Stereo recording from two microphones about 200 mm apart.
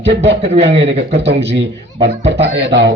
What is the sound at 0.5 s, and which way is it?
Speech, 30° right (ahead or behind).